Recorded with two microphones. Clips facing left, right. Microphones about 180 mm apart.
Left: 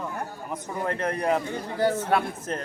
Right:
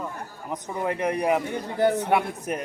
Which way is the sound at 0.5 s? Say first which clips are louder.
Right 2 dB; 15° right (ahead or behind).